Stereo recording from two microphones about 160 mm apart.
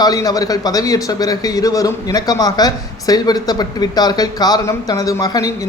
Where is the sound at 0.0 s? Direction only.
25° left (ahead or behind).